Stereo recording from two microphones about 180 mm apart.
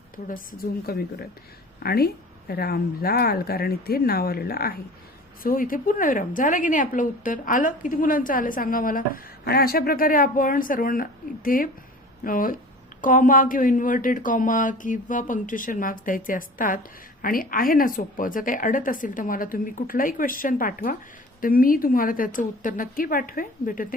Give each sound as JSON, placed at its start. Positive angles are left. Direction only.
{"t": 0.3, "sound": "a woman's voice", "side_deg": 50}